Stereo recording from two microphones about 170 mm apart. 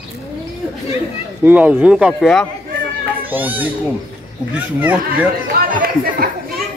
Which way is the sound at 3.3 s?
10° right (ahead or behind).